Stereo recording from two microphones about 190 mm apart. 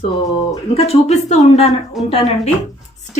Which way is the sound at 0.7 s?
30° left (ahead or behind).